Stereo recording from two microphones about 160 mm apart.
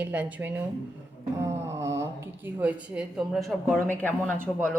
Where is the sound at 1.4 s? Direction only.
15° right (ahead or behind).